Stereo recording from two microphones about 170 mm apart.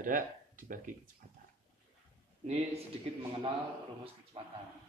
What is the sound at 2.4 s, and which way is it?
Speech, 40° right (ahead or behind).